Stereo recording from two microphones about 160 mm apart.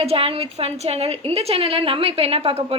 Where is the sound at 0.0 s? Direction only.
35° right (ahead or behind).